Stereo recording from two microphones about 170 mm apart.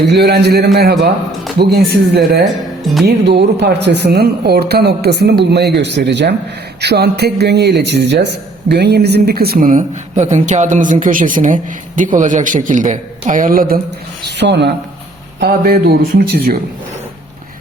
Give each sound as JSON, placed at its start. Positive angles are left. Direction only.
{"t": 0.1, "sound": "a man's voice", "side_deg": -70}
{"t": 6.8, "sound": "a man's voice", "side_deg": -70}
{"t": 8.7, "sound": "speech", "side_deg": -75}
{"t": 14.3, "sound": "a man's voice", "side_deg": -85}
{"t": 15.4, "sound": "speech", "side_deg": -65}